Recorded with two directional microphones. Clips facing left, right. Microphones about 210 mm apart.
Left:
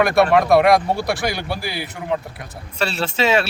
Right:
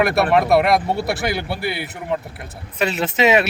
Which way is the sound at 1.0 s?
5° right (ahead or behind).